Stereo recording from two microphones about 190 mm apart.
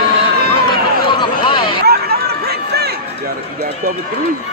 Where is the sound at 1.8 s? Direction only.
55° right (ahead or behind).